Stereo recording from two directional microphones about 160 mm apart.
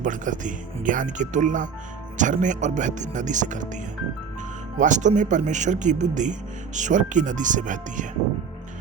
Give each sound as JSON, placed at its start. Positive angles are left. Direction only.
{"t": 0.0, "sound": "speech", "side_deg": -55}
{"t": 4.8, "sound": "speech", "side_deg": -50}